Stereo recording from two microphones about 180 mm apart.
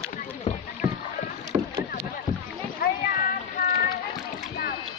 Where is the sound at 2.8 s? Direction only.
50° left (ahead or behind).